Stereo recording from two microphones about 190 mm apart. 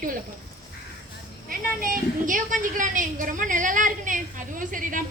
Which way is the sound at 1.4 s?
45° right (ahead or behind).